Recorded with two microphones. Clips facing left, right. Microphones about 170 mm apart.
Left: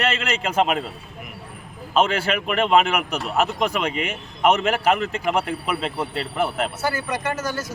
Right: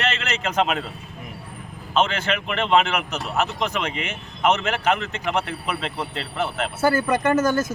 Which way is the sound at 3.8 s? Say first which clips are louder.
Left 3 dB; 35° left (ahead or behind).